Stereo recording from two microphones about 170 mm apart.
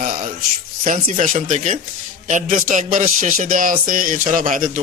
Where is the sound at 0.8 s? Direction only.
50° right (ahead or behind).